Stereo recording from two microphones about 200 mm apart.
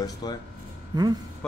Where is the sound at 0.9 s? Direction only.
20° right (ahead or behind).